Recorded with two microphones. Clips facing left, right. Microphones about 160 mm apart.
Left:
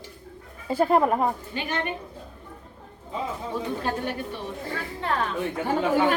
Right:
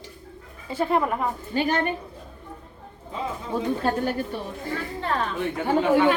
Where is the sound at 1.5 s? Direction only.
40° right (ahead or behind).